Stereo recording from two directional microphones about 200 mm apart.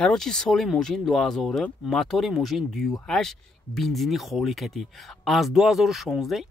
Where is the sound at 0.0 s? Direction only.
5° left (ahead or behind).